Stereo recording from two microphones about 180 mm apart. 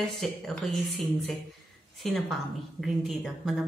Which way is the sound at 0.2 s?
Centre (ahead or behind).